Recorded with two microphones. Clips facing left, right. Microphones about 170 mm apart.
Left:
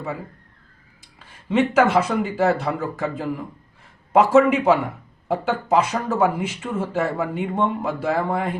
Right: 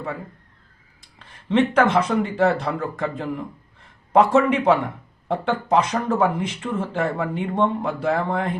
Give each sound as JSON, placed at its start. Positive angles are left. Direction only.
{"t": 1.2, "sound": "speech", "side_deg": 5}